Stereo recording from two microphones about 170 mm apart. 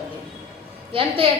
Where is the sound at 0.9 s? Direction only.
30° right (ahead or behind).